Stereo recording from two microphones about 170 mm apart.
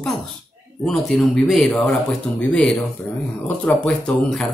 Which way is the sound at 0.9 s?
Centre (ahead or behind).